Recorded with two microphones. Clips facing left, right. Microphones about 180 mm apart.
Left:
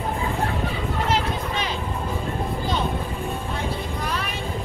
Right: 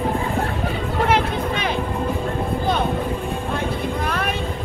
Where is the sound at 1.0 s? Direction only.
55° right (ahead or behind).